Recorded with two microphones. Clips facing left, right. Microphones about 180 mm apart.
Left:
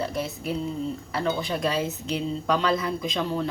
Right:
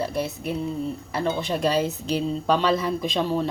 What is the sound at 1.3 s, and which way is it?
Speech, 30° right (ahead or behind).